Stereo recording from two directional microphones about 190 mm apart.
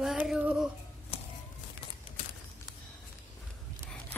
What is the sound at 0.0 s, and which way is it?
Music, centre (ahead or behind).